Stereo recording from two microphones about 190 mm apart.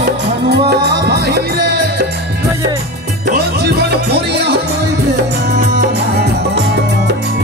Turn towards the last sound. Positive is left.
turn(degrees=-60)  # may be behind; listen again after turning